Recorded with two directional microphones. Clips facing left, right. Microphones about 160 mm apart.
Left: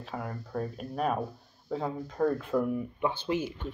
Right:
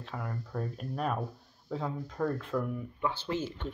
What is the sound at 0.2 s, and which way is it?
Speech, 5° left (ahead or behind).